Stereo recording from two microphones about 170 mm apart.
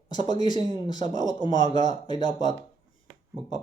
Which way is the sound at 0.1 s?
25° left (ahead or behind).